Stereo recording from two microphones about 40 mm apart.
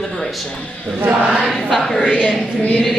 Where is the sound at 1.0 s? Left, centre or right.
Right.